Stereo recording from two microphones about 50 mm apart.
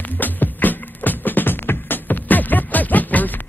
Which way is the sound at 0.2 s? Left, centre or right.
Left.